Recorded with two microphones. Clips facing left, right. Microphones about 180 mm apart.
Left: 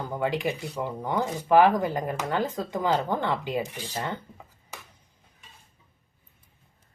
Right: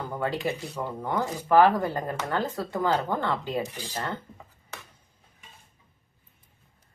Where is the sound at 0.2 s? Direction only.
15° left (ahead or behind).